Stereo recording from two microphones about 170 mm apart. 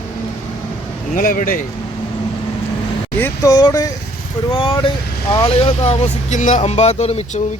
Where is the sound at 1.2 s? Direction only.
55° left (ahead or behind).